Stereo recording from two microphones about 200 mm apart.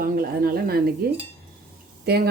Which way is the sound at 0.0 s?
45° right (ahead or behind).